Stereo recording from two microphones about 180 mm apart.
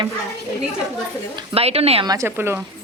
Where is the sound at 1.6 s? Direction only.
35° right (ahead or behind).